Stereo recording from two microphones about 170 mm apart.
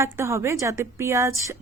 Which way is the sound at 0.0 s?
15° right (ahead or behind).